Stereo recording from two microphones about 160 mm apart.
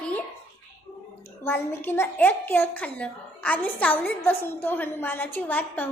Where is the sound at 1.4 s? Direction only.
15° left (ahead or behind).